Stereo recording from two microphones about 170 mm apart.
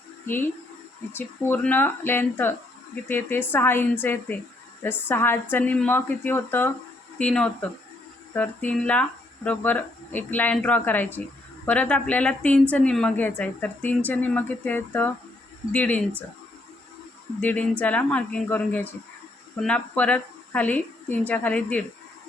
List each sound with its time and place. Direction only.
1.1 s speech: 10° left (ahead or behind)
17.4 s speech: 10° left (ahead or behind)